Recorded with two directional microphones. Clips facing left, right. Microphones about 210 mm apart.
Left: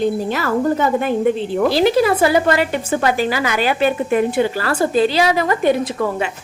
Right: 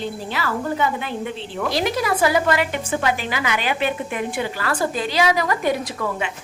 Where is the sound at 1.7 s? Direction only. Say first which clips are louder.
Left 6 dB; 30° left (ahead or behind).